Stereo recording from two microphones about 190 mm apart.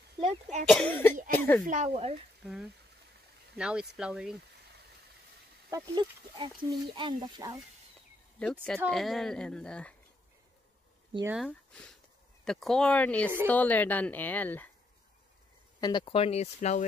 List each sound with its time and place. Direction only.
0.2 s speech: 35° right (ahead or behind)
0.7 s speech: 5° left (ahead or behind)
1.7 s speech: 35° right (ahead or behind)
2.4 s a woman's voice: centre (ahead or behind)
5.7 s speech: 25° right (ahead or behind)
8.6 s a woman's voice: 5° left (ahead or behind)
11.2 s a woman's voice: centre (ahead or behind)
15.8 s speech: 25° left (ahead or behind)